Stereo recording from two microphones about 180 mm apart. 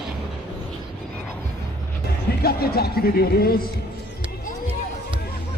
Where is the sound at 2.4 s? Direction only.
60° left (ahead or behind).